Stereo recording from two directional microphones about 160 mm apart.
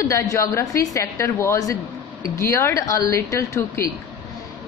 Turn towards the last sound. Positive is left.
turn(degrees=15)  # may be behind; listen again after turning